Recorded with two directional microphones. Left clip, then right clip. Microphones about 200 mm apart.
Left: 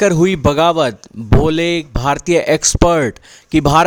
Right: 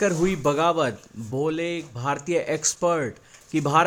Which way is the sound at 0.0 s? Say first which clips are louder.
Left 9 dB; 50° left (ahead or behind).